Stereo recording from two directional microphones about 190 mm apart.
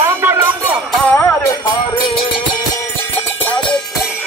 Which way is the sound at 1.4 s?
25° left (ahead or behind).